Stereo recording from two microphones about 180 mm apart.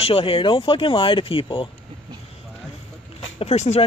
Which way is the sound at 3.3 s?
35° left (ahead or behind).